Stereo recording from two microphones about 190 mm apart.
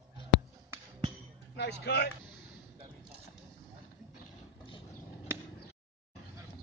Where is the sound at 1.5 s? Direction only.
60° left (ahead or behind).